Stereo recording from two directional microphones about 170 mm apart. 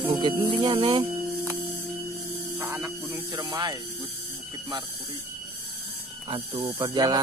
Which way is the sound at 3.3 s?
25° right (ahead or behind).